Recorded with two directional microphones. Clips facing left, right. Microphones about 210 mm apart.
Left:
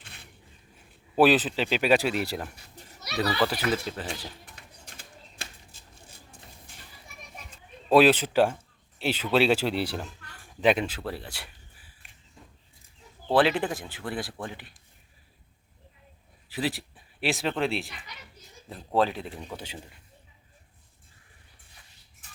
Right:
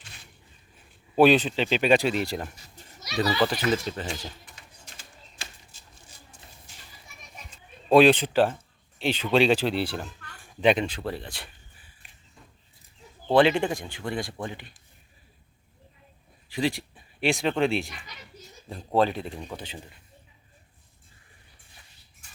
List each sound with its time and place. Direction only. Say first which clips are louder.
0.0 s a sound: left 1 dB; 60° left (ahead or behind)
1.1 s speech: right 2 dB; 5° left (ahead or behind)
2.6 s children playing: left 1 dB; 60° left (ahead or behind)
3.2 s speech: right 2 dB; 5° left (ahead or behind)
4.4 s a sound: left 1 dB; 60° left (ahead or behind)
6.7 s children playing: left 2 dB; 55° left (ahead or behind)
7.9 s speech: right 2 dB; 5° left (ahead or behind)
13.2 s speech: right 3 dB; 5° left (ahead or behind)
16.5 s speech: right 3 dB; 5° left (ahead or behind)
18.9 s speech: right 2 dB; centre (ahead or behind)